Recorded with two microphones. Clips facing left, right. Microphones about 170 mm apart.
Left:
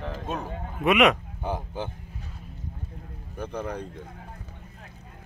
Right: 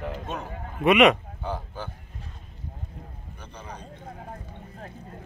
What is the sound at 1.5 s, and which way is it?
Speech, 20° left (ahead or behind).